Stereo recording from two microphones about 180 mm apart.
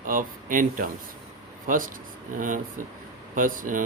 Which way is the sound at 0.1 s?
50° right (ahead or behind).